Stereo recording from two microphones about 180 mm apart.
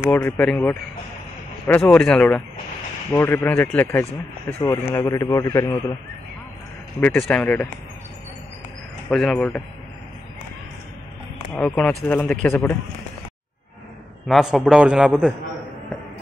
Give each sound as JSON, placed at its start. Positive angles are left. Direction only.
{"t": 0.0, "sound": "speech", "side_deg": 10}
{"t": 7.2, "sound": "speech", "side_deg": 5}
{"t": 9.1, "sound": "a man's voice", "side_deg": 5}
{"t": 11.5, "sound": "speech", "side_deg": 5}
{"t": 14.2, "sound": "a man's voice", "side_deg": 0}